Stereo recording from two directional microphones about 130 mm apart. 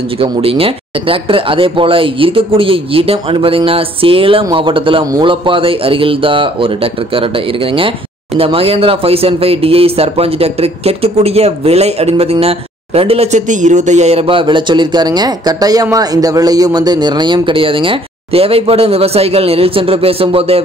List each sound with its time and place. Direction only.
0.2 s speech: 45° right (ahead or behind)
14.2 s speech: 40° right (ahead or behind)